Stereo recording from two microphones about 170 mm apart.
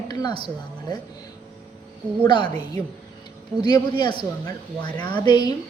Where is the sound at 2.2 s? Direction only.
25° left (ahead or behind).